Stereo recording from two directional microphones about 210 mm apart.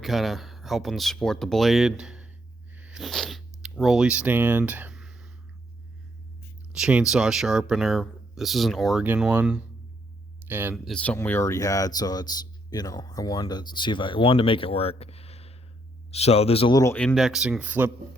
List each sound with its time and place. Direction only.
0.0 s speech: centre (ahead or behind)
2.7 s a sound: 5° right (ahead or behind)
6.7 s speech: centre (ahead or behind)
10.9 s speech: 5° left (ahead or behind)